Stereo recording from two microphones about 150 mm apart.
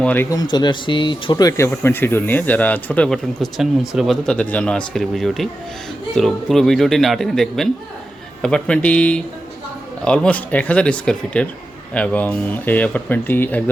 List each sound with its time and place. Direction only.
0.0 s speech: 10° left (ahead or behind)
0.3 s speech: 25° left (ahead or behind); by 13.7 s 10° left (ahead or behind)